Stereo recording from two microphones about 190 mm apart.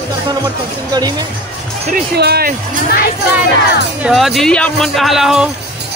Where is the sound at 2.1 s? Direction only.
55° right (ahead or behind).